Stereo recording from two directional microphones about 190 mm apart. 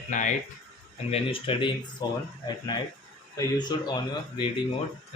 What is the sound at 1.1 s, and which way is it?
Speech, 30° left (ahead or behind).